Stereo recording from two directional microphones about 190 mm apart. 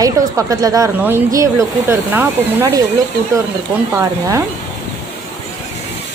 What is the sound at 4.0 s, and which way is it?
Speech, 15° right (ahead or behind).